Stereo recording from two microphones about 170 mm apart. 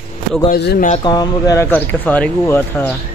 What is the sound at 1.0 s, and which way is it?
Speech, 20° left (ahead or behind).